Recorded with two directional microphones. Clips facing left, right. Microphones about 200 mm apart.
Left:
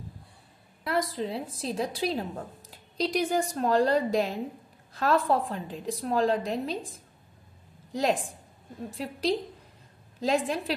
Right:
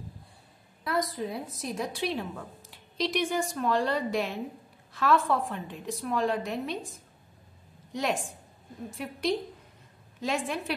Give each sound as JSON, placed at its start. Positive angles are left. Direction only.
{"t": 0.8, "sound": "a woman's voice", "side_deg": 30}